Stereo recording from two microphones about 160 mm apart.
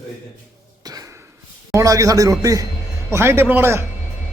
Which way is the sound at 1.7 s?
20° right (ahead or behind).